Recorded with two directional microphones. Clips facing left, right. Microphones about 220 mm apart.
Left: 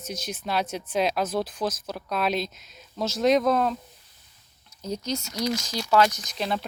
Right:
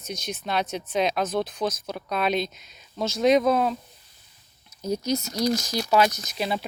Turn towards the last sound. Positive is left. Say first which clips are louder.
# right 1 dB
turn(degrees=-5)  # may be behind; listen again after turning